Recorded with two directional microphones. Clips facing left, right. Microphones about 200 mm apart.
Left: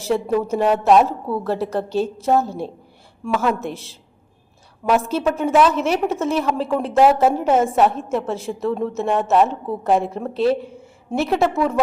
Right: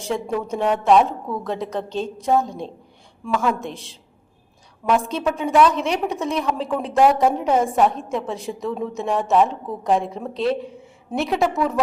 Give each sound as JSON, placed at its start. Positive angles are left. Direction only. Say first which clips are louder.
{"t": 0.0, "sound": "a woman's voice", "louder": "left 5 dB", "side_deg": 5}